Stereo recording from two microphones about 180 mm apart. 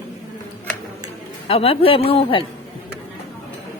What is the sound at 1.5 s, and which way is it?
Speech, 30° left (ahead or behind).